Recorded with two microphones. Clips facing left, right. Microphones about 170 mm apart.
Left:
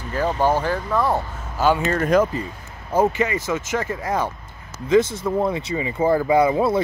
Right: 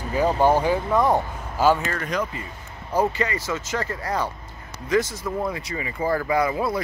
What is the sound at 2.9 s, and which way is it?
Speech, 20° left (ahead or behind).